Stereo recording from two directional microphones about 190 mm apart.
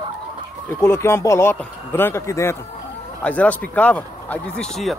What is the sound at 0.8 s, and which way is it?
A man's voice, 15° left (ahead or behind).